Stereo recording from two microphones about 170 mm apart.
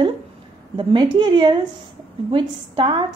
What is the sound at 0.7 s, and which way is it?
A woman's voice, 25° right (ahead or behind).